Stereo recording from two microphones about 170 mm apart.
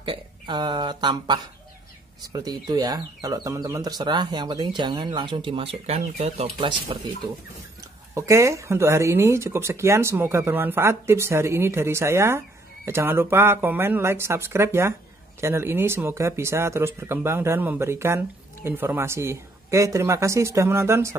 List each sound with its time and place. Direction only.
0.0 s speech: 30° right (ahead or behind)
8.1 s speech: 20° right (ahead or behind)